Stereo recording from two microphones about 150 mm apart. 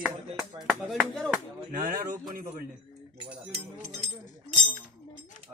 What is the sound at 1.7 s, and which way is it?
Speech, 65° right (ahead or behind).